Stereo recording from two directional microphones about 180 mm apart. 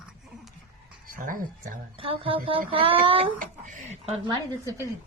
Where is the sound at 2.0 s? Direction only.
30° right (ahead or behind).